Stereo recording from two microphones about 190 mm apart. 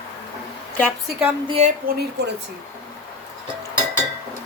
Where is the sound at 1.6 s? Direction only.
35° right (ahead or behind).